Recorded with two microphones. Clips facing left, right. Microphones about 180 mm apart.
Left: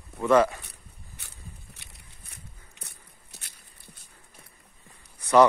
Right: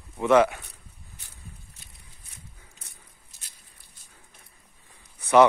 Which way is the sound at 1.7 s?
70° left (ahead or behind).